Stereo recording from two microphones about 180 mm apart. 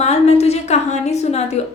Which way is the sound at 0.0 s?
40° left (ahead or behind).